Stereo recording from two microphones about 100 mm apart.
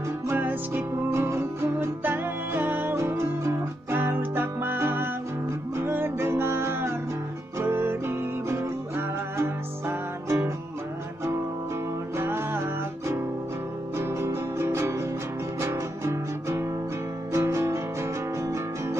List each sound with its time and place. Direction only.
0.3 s music: 20° right (ahead or behind)
12.2 s music: 25° right (ahead or behind)
13.9 s music: 25° right (ahead or behind)